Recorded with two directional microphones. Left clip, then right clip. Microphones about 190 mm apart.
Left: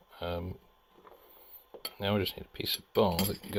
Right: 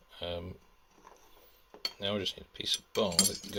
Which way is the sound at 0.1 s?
25° left (ahead or behind).